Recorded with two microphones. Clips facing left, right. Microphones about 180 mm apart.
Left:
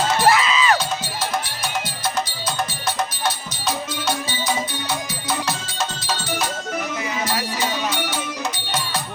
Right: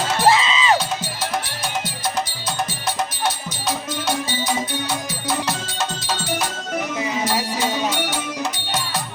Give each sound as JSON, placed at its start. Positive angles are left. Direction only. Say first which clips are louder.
{"t": 0.3, "sound": "music", "louder": "right 2 dB", "side_deg": -25}